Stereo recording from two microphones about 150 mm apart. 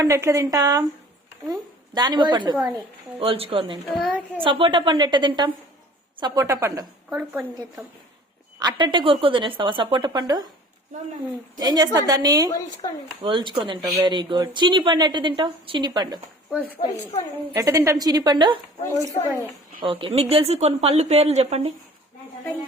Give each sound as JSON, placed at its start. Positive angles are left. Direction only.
{"t": 0.0, "sound": "a woman's voice", "side_deg": -20}
{"t": 3.8, "sound": "a woman's voice", "side_deg": 0}
{"t": 4.4, "sound": "a woman's voice", "side_deg": -35}
{"t": 8.5, "sound": "speech", "side_deg": -30}
{"t": 11.6, "sound": "a woman's voice", "side_deg": -25}
{"t": 12.5, "sound": "speech", "side_deg": 20}
{"t": 13.2, "sound": "speech", "side_deg": -35}
{"t": 16.7, "sound": "speech", "side_deg": 30}
{"t": 17.5, "sound": "a woman's voice", "side_deg": -20}
{"t": 19.8, "sound": "a woman's voice", "side_deg": -35}